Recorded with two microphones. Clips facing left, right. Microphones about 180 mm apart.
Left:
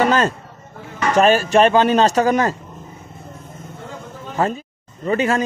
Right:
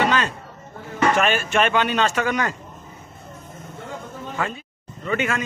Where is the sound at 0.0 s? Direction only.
40° left (ahead or behind).